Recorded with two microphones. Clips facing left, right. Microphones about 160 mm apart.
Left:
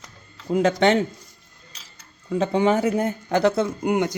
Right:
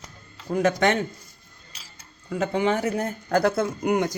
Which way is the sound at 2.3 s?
30° left (ahead or behind).